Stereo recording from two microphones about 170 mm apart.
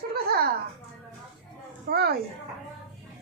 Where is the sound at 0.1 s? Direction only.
65° right (ahead or behind).